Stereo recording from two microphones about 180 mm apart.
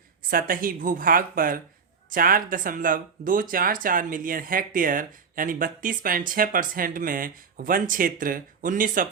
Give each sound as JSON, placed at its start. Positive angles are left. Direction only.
{"t": 0.3, "sound": "speech", "side_deg": -50}